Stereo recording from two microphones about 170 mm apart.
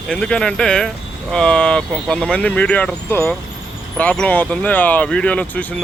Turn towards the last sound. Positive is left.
turn(degrees=10)  # may be behind; listen again after turning